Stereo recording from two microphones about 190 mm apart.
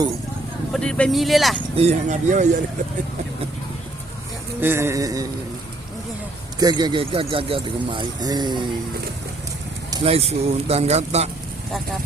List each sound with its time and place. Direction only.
0.7 s speech: 5° left (ahead or behind)
1.7 s speech: 35° right (ahead or behind)
4.6 s music: 15° right (ahead or behind)
6.6 s speech: 20° right (ahead or behind)
9.9 s speech: 30° right (ahead or behind)